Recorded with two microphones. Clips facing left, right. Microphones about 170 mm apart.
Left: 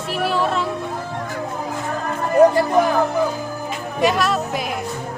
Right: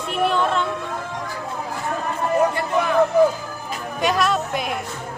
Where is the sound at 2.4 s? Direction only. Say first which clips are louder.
Left 6 dB; 35° left (ahead or behind).